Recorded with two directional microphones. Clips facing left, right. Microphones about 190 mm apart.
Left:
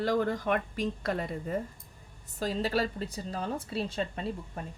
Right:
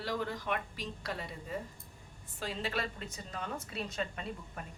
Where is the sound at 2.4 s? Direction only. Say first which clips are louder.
Left 8 dB; 40° left (ahead or behind).